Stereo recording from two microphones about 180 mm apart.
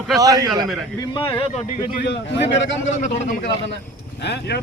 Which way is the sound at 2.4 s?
90° left.